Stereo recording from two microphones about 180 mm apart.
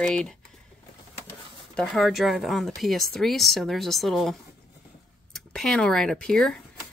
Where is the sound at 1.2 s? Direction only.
5° left (ahead or behind).